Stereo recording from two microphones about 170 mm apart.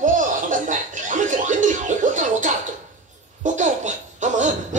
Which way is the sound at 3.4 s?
45° right (ahead or behind).